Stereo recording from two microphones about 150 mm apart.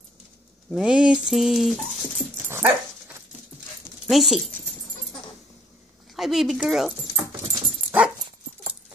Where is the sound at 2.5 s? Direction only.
15° right (ahead or behind).